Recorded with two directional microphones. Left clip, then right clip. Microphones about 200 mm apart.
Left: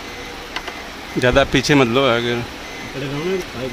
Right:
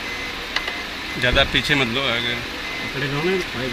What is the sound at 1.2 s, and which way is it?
Speech, 40° left (ahead or behind).